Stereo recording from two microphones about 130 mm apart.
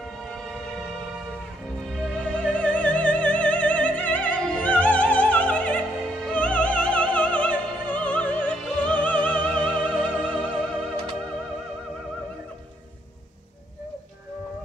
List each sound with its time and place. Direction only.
0.2 s music: 5° left (ahead or behind)